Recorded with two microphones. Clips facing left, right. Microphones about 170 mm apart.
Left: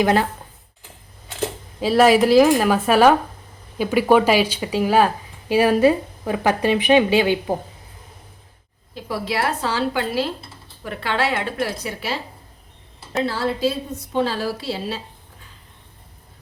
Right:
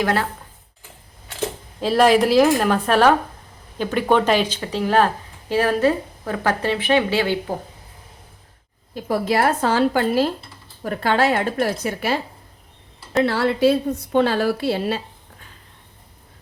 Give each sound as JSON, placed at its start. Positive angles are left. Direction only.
{"t": 0.0, "sound": "speech", "side_deg": 20}
{"t": 1.4, "sound": "speech", "side_deg": 0}
{"t": 9.0, "sound": "a woman's voice", "side_deg": -45}
{"t": 13.2, "sound": "a woman's voice", "side_deg": -65}